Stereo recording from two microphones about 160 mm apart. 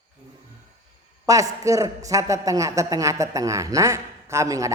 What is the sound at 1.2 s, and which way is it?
A woman's voice, 20° right (ahead or behind).